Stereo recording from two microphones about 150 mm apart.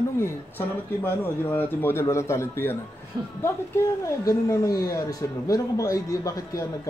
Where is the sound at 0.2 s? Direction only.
15° left (ahead or behind).